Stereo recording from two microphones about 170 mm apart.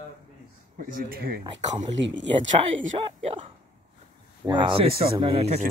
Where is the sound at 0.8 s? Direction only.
60° right (ahead or behind).